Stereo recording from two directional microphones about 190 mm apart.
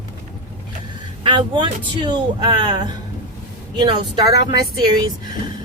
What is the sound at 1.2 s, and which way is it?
Speech, 25° right (ahead or behind).